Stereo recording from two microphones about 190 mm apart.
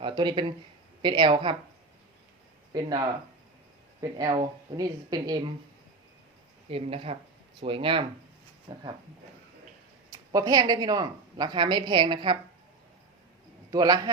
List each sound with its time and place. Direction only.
0.0 s speech: 25° right (ahead or behind)
2.7 s speech: 20° right (ahead or behind)
4.2 s speech: 20° right (ahead or behind)
6.7 s speech: 30° right (ahead or behind)
10.1 s speech: 20° right (ahead or behind)
13.7 s a man's voice: 20° right (ahead or behind)